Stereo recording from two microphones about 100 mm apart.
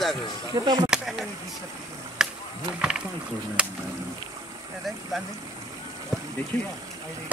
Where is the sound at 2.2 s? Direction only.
5° right (ahead or behind).